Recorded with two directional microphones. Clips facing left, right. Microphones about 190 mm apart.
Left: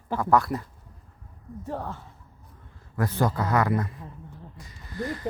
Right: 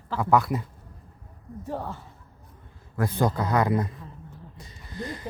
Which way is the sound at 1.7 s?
5° right (ahead or behind).